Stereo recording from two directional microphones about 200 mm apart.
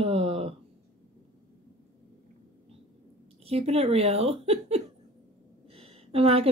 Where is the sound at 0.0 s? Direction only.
30° right (ahead or behind).